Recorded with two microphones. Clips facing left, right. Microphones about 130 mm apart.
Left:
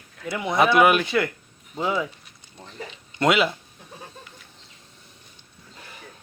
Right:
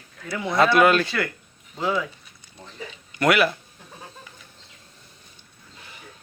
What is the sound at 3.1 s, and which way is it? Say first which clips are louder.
Speech: right 1 dB; 20° left (ahead or behind).